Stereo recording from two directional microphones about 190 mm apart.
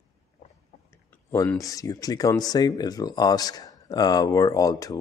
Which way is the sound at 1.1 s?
15° left (ahead or behind).